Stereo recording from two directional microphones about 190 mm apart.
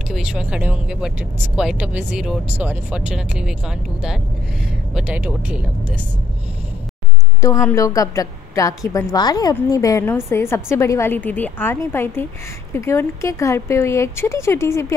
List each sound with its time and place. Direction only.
0.1 s speech: 5° right (ahead or behind)
7.4 s a woman's voice: 15° left (ahead or behind)